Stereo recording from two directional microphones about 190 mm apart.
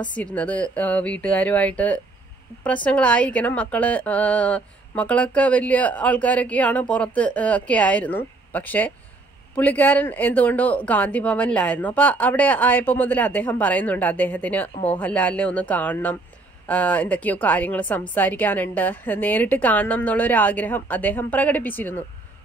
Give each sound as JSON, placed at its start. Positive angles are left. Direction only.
{"t": 0.1, "sound": "a woman's voice", "side_deg": 5}